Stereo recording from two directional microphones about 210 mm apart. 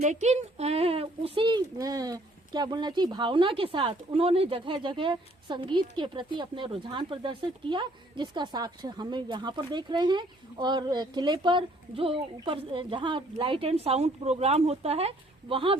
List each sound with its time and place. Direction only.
0.0 s speech: 35° right (ahead or behind)